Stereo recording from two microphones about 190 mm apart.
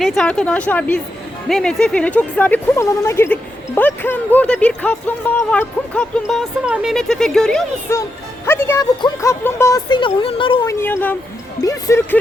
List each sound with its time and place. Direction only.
0.0 s speech: centre (ahead or behind)
7.9 s speech: 15° left (ahead or behind)
10.7 s speech: 15° left (ahead or behind)